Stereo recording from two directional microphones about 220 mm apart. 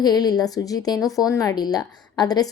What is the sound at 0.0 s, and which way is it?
A woman's voice, 20° left (ahead or behind).